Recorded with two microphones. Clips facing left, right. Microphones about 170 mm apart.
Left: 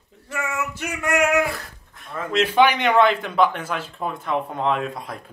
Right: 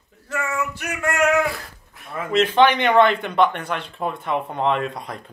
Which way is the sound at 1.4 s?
Centre (ahead or behind).